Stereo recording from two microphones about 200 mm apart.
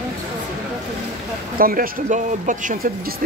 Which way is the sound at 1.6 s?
45° right (ahead or behind).